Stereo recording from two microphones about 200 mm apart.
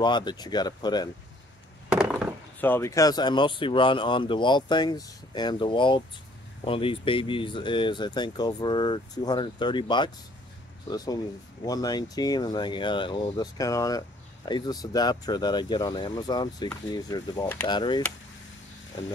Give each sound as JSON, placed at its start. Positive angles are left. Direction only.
{"t": 0.0, "sound": "speech", "side_deg": 20}
{"t": 2.6, "sound": "speech", "side_deg": 10}